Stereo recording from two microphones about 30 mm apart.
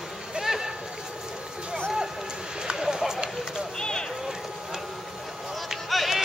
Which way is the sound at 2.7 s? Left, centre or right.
Centre.